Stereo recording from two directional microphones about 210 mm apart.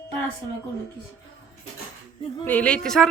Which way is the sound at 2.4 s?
5° left (ahead or behind).